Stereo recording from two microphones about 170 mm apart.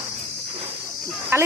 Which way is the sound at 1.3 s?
15° right (ahead or behind).